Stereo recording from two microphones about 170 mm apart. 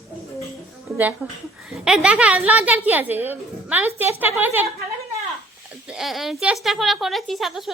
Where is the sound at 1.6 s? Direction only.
5° right (ahead or behind).